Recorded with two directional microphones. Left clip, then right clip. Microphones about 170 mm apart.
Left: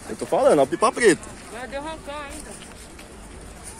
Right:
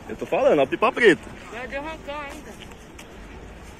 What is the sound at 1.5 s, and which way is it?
Boat, 60° left (ahead or behind).